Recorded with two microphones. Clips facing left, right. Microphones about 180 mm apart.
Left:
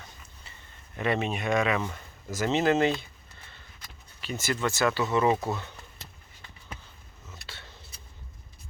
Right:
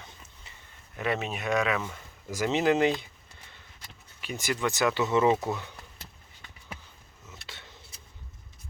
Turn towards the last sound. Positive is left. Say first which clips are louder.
# left 1 dB
turn(degrees=-15)  # may be behind; listen again after turning